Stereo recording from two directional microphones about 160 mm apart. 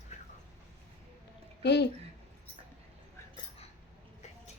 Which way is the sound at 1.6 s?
90° left.